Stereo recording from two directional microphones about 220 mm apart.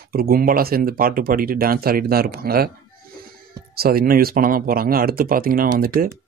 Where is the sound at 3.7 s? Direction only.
45° right (ahead or behind).